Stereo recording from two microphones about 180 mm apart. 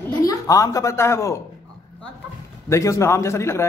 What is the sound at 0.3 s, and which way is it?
Speech, 20° left (ahead or behind).